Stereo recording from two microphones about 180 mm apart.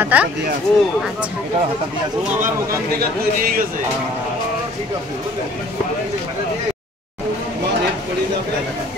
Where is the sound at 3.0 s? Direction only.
55° right (ahead or behind).